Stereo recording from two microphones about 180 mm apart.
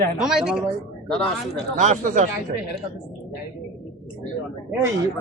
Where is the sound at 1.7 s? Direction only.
45° right (ahead or behind).